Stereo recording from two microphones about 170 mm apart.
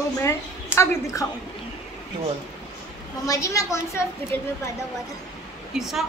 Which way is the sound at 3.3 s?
20° left (ahead or behind).